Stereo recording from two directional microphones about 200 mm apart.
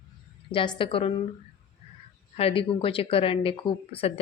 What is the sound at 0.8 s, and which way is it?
Speech, 25° left (ahead or behind).